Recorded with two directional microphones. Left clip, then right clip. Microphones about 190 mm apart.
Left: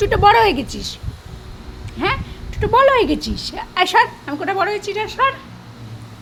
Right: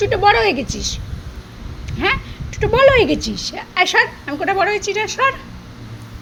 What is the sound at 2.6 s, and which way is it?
A woman's voice, centre (ahead or behind).